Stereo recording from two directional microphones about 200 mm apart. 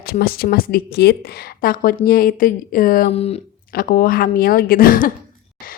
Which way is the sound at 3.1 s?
30° left (ahead or behind).